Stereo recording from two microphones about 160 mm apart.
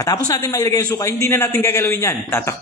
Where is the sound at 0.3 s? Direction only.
20° left (ahead or behind).